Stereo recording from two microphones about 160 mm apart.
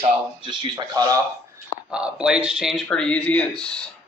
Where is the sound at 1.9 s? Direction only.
5° right (ahead or behind).